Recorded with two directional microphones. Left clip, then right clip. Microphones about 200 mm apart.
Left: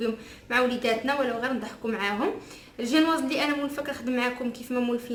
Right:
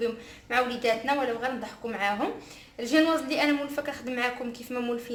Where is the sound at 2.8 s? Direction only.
30° right (ahead or behind).